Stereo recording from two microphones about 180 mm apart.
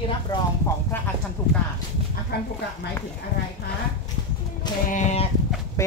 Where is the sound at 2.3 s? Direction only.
65° left (ahead or behind).